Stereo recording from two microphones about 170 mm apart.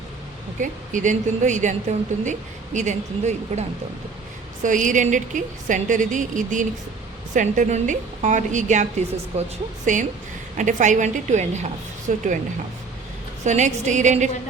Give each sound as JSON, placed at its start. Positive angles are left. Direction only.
{"t": 0.6, "sound": "a woman's voice", "side_deg": -50}
{"t": 13.4, "sound": "a woman's voice", "side_deg": -45}